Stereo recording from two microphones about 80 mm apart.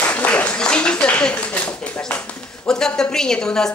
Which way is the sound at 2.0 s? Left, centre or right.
Centre.